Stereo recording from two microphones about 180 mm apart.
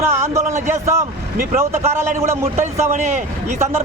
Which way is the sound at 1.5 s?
15° right (ahead or behind).